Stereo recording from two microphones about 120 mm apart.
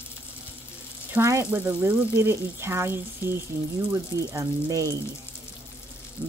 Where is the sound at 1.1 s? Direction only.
20° right (ahead or behind).